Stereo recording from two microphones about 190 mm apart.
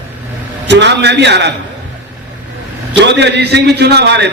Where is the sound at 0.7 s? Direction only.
65° right (ahead or behind).